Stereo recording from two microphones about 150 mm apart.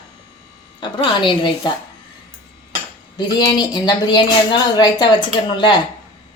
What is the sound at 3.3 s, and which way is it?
A woman's voice, 25° left (ahead or behind).